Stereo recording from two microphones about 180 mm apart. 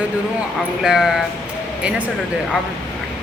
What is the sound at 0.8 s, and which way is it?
Speech, 5° right (ahead or behind).